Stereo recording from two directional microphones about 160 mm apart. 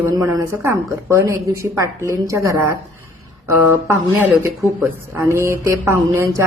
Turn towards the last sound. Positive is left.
turn(degrees=-20)  # may be behind; listen again after turning